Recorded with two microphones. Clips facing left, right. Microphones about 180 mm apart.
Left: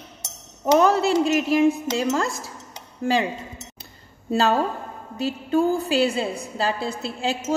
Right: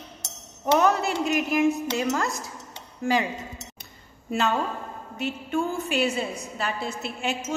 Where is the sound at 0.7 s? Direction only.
30° left (ahead or behind).